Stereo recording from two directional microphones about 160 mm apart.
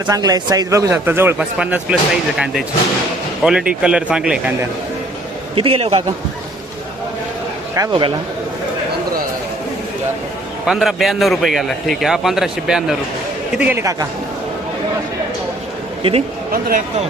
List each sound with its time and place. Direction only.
0.1 s a man's voice: 25° right (ahead or behind); by 2.0 s 5° right (ahead or behind)
3.4 s a man's voice: 5° right (ahead or behind)
5.5 s a man's voice: 35° right (ahead or behind)
7.8 s a man's voice: 30° right (ahead or behind)
10.7 s a man's voice: centre (ahead or behind)
16.5 s speech: 65° right (ahead or behind)